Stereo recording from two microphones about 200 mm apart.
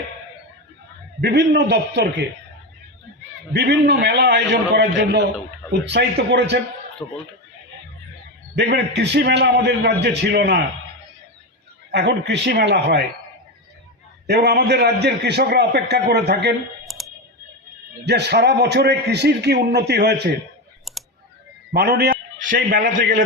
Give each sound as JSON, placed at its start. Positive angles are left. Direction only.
{"t": 1.2, "sound": "a man's voice", "side_deg": -55}
{"t": 3.5, "sound": "a man's voice", "side_deg": -60}
{"t": 8.5, "sound": "a man's voice", "side_deg": -60}
{"t": 11.9, "sound": "a man's voice", "side_deg": -55}
{"t": 14.3, "sound": "a man's voice", "side_deg": -55}
{"t": 16.8, "sound": "clicking", "side_deg": 0}
{"t": 18.0, "sound": "a man's voice", "side_deg": -55}
{"t": 20.9, "sound": "a sound", "side_deg": 0}
{"t": 21.7, "sound": "a man's voice", "side_deg": -50}